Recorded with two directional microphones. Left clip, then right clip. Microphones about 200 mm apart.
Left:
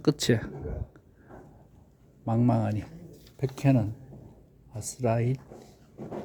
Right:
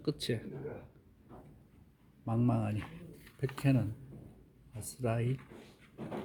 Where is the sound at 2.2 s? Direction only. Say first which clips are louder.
Left 7 dB; 15° left (ahead or behind).